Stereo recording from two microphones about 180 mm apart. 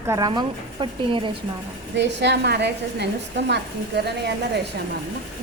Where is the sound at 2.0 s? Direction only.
75° right (ahead or behind).